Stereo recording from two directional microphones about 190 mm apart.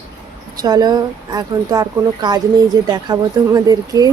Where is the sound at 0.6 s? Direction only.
20° right (ahead or behind).